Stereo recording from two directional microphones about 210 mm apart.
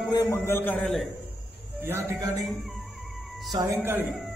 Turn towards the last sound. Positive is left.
turn(degrees=-5)  # may be behind; listen again after turning